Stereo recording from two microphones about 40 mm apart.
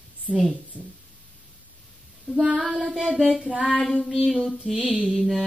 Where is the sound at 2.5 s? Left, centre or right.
Centre.